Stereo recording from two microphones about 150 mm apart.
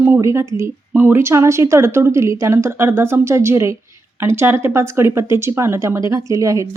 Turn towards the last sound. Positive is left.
turn(degrees=-20)  # may be behind; listen again after turning